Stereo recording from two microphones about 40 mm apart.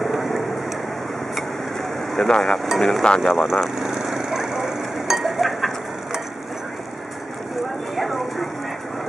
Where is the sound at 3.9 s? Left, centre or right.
Centre.